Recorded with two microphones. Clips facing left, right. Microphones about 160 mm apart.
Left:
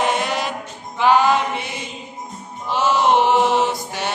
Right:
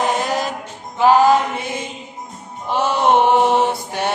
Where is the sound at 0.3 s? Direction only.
45° right (ahead or behind).